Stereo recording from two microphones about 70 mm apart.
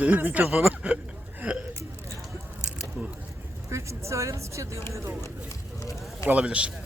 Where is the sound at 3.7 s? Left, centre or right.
Right.